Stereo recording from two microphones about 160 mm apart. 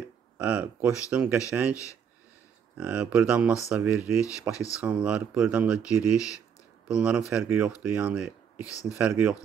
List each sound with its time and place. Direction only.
0.4 s speech: 10° right (ahead or behind)
2.8 s speech: 5° right (ahead or behind)
4.2 s speech: 20° left (ahead or behind)
4.7 s speech: 5° right (ahead or behind)
6.9 s speech: 5° right (ahead or behind)